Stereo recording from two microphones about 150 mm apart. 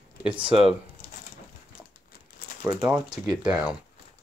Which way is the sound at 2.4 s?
65° left (ahead or behind).